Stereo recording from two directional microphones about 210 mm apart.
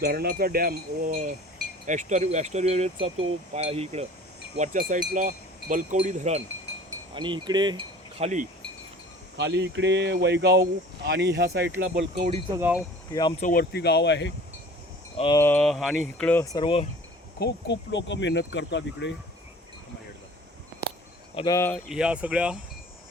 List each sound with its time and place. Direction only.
0.0 s speech: 50° right (ahead or behind); by 8.4 s 30° right (ahead or behind)
9.4 s speech: 55° right (ahead or behind)
12.5 s wind chime: 10° right (ahead or behind)
13.4 s speech: 45° left (ahead or behind)
15.2 s speech: 15° left (ahead or behind)
17.4 s speech: 60° left (ahead or behind)
21.3 s speech: 15° left (ahead or behind)
21.8 s speech: 5° right (ahead or behind)